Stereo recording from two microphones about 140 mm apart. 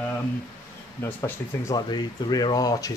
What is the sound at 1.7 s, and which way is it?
Speech, 30° left (ahead or behind).